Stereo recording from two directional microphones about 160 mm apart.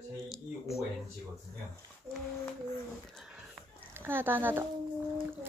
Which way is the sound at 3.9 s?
15° right (ahead or behind).